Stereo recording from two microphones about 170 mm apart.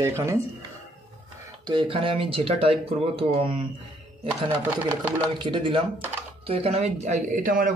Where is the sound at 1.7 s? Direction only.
30° right (ahead or behind).